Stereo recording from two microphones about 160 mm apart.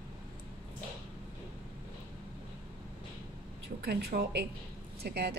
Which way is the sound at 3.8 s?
80° right.